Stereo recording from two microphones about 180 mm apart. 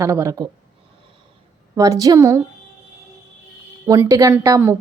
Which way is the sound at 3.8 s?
15° right (ahead or behind).